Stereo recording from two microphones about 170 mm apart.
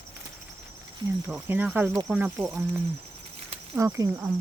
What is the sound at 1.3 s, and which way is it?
Speech, 10° right (ahead or behind).